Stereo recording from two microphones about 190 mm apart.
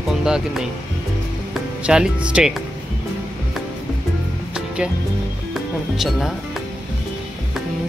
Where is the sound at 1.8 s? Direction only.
5° right (ahead or behind).